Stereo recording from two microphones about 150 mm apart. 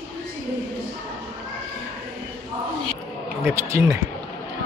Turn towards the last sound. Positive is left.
turn(degrees=-15)  # may be behind; listen again after turning